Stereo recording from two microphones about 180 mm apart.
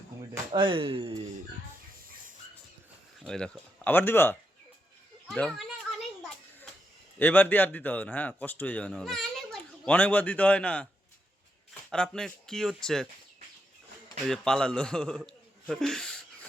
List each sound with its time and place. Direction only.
0.5 s speech: 30° right (ahead or behind)
3.2 s a man's voice: 5° left (ahead or behind)
5.4 s children playing: centre (ahead or behind)
7.2 s a man's voice: 10° left (ahead or behind)
14.3 s a man's voice: 5° left (ahead or behind)
15.6 s a sound: centre (ahead or behind)